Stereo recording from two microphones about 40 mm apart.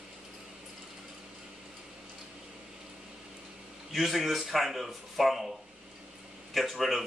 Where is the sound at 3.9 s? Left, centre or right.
Centre.